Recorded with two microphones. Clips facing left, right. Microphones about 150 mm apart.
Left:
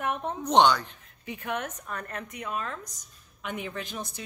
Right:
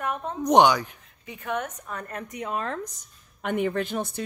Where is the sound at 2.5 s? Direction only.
60° right (ahead or behind).